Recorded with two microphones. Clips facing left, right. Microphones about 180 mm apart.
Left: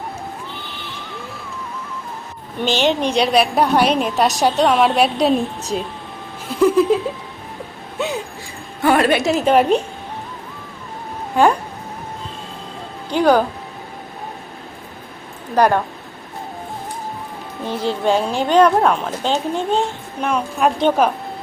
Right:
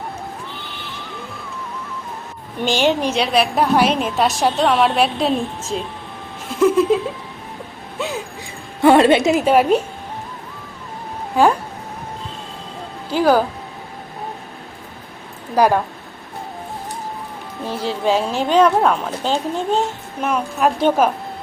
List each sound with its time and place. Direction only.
2.6 s a woman's voice: 10° right (ahead or behind)
8.8 s a woman's voice: 25° right (ahead or behind)
9.4 s a woman's voice: 5° right (ahead or behind)
11.3 s a woman's voice: centre (ahead or behind)
13.1 s speech: 5° right (ahead or behind)
15.5 s a woman's voice: 5° right (ahead or behind)
17.7 s a woman's voice: 5° right (ahead or behind)